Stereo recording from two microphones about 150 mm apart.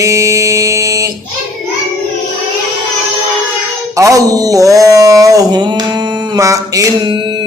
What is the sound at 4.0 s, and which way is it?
Speech, 20° right (ahead or behind).